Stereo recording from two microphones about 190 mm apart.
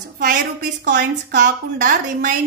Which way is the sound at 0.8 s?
60° right (ahead or behind).